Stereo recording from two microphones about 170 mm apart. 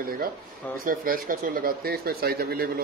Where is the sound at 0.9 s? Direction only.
55° right (ahead or behind).